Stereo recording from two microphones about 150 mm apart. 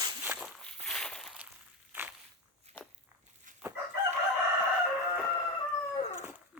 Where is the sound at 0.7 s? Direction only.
5° left (ahead or behind).